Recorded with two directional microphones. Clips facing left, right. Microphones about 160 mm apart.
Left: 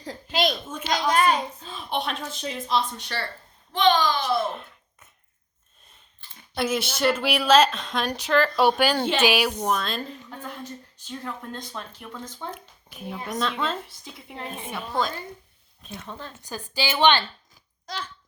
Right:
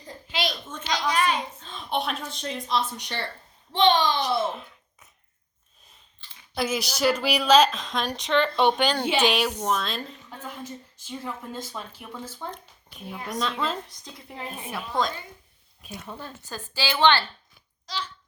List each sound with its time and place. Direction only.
0.3 s a sound: 45° left (ahead or behind)
1.1 s a child's voice: 45° left (ahead or behind)
1.6 s a woman's voice: 5° left (ahead or behind)
3.0 s a child's voice: 20° right (ahead or behind)
4.4 s a sound: centre (ahead or behind)
6.1 s clicking: 50° left (ahead or behind)
6.5 s a woman's voice: centre (ahead or behind)
12.5 s a woman's voice: 5° left (ahead or behind)
16.0 s speech: 10° right (ahead or behind)
16.5 s a woman's voice: 15° left (ahead or behind)
17.8 s speech: 50° left (ahead or behind)